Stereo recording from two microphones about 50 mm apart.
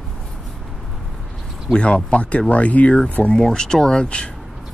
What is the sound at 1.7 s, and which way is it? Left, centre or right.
Speech, left.